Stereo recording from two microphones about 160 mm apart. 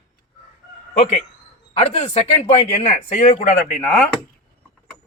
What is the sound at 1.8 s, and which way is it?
A man's voice, 40° left (ahead or behind).